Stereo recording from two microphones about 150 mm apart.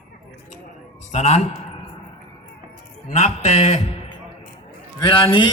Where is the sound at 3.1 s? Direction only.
50° left (ahead or behind).